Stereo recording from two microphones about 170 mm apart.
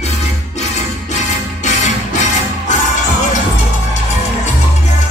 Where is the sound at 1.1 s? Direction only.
45° left (ahead or behind).